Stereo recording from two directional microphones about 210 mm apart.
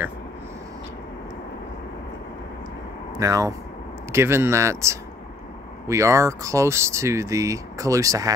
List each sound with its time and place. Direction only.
3.2 s speech: 15° right (ahead or behind)